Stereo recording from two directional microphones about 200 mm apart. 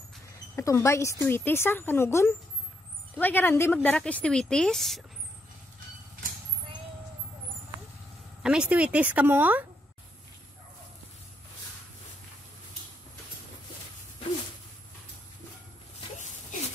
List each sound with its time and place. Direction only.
0.6 s a woman's voice: 15° left (ahead or behind)
8.4 s speech: 5° right (ahead or behind)
16.2 s a sound: 35° left (ahead or behind)